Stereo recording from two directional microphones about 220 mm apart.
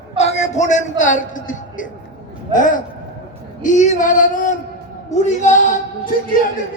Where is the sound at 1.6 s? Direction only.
35° left (ahead or behind).